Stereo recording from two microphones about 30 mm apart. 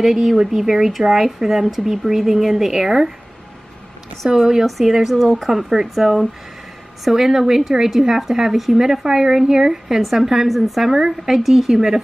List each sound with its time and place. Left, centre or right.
0.0 s speech: centre
4.3 s speech: centre
4.6 s a woman's voice: centre
10.5 s a woman's voice: centre
10.9 s speech: centre